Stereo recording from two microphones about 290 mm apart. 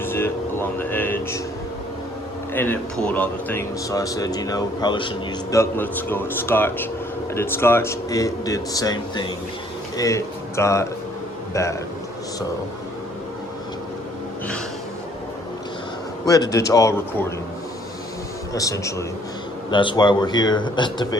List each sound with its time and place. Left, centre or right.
0.0 s vehicle: centre
2.5 s speech: centre
16.2 s speech: centre
18.5 s speech: centre